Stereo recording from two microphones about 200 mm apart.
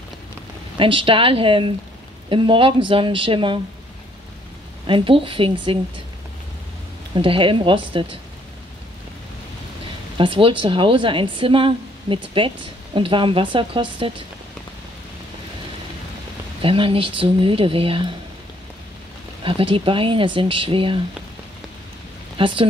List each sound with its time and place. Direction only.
0.7 s a woman's voice: 25° right (ahead or behind)
4.8 s a woman's voice: 25° right (ahead or behind)
7.2 s a woman's voice: 25° right (ahead or behind)
10.1 s a woman's voice: 25° right (ahead or behind)
16.6 s a woman's voice: 25° right (ahead or behind)
19.4 s a woman's voice: 25° right (ahead or behind)
22.4 s a woman's voice: 25° right (ahead or behind)